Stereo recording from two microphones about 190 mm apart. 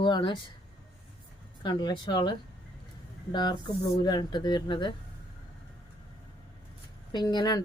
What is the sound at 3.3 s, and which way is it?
A woman's voice, 20° left (ahead or behind).